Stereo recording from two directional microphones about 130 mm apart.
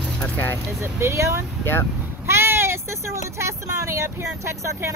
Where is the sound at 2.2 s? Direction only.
20° right (ahead or behind).